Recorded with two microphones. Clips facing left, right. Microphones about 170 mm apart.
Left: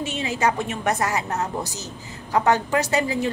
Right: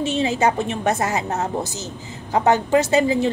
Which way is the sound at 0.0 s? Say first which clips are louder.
Right 4 dB; 30° right (ahead or behind).